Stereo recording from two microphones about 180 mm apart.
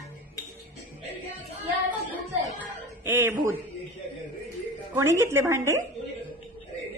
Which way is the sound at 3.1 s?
10° right (ahead or behind).